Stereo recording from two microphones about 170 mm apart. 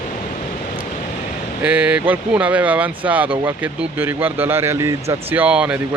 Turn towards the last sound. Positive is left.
turn(degrees=-10)  # may be behind; listen again after turning